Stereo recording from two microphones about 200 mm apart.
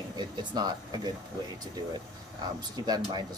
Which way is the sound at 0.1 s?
20° right (ahead or behind).